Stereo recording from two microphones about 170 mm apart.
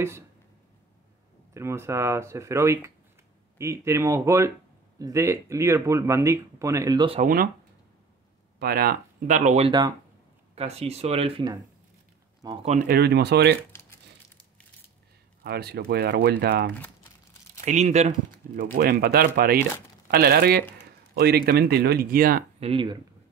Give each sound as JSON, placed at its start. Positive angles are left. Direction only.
{"t": 1.5, "sound": "speech", "side_deg": -15}
{"t": 7.2, "sound": "speech", "side_deg": -55}
{"t": 8.5, "sound": "speech", "side_deg": -65}
{"t": 9.4, "sound": "speech", "side_deg": -45}
{"t": 9.7, "sound": "speech", "side_deg": -25}
{"t": 10.5, "sound": "speech", "side_deg": -35}
{"t": 12.8, "sound": "speech", "side_deg": -70}
{"t": 13.7, "sound": "crumpling", "side_deg": 15}
{"t": 15.4, "sound": "speech", "side_deg": -70}
{"t": 17.6, "sound": "speech", "side_deg": -40}
{"t": 18.6, "sound": "speech", "side_deg": -55}
{"t": 22.6, "sound": "speech", "side_deg": -30}